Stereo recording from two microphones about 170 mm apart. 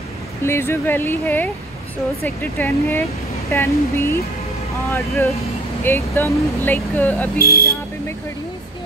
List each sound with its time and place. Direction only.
0.4 s speech: 15° left (ahead or behind)
7.3 s speech: 65° left (ahead or behind)